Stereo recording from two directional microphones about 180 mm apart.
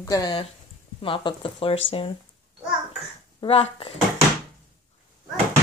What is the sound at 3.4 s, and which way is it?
Speech, 30° left (ahead or behind).